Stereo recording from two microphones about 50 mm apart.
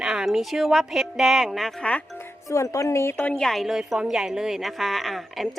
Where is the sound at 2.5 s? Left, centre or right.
Left.